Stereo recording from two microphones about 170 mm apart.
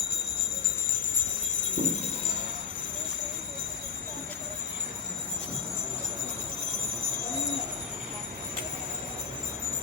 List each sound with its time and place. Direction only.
1.8 s music: 40° right (ahead or behind)